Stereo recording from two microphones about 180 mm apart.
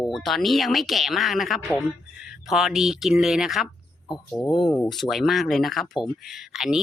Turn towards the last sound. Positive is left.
turn(degrees=0)  # may be behind; listen again after turning